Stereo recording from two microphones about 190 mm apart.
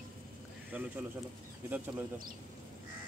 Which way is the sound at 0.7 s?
10° right (ahead or behind).